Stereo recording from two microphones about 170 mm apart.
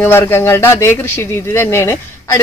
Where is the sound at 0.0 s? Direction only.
15° left (ahead or behind).